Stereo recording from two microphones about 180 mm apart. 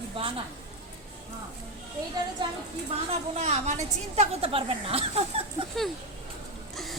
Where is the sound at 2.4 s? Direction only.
25° right (ahead or behind).